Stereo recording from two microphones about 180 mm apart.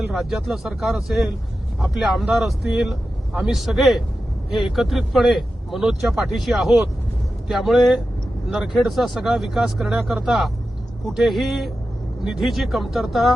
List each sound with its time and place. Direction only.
0.1 s speech: centre (ahead or behind)